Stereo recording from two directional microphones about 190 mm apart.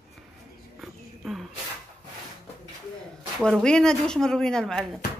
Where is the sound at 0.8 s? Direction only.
Centre (ahead or behind).